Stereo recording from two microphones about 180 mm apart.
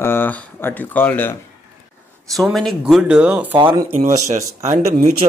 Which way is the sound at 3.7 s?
20° right (ahead or behind).